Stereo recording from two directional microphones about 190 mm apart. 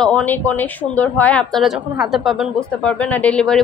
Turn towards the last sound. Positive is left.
turn(degrees=5)  # may be behind; listen again after turning